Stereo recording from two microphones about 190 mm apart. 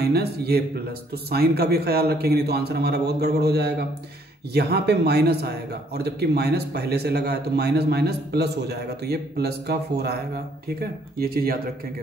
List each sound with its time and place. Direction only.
0.0 s speech: 55° right (ahead or behind)